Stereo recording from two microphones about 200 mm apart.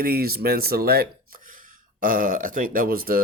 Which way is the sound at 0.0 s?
50° right (ahead or behind).